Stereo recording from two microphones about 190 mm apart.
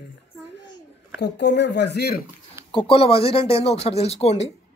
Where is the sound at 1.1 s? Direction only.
65° left (ahead or behind).